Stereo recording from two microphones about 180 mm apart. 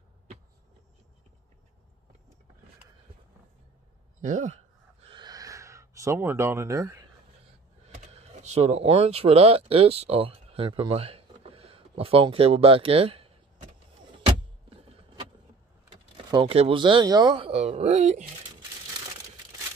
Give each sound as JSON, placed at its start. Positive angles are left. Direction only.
{"t": 4.2, "sound": "speech", "side_deg": -40}
{"t": 5.0, "sound": "a sound", "side_deg": -25}
{"t": 7.9, "sound": "speech", "side_deg": -40}
{"t": 14.2, "sound": "vehicle", "side_deg": -30}
{"t": 16.3, "sound": "speech", "side_deg": -30}